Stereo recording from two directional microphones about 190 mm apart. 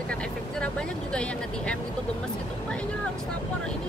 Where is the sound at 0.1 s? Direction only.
5° left (ahead or behind).